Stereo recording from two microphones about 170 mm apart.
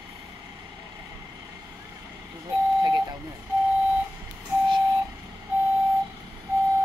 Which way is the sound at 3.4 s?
10° right (ahead or behind).